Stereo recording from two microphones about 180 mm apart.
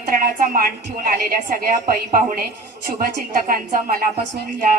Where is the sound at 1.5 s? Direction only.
55° right (ahead or behind).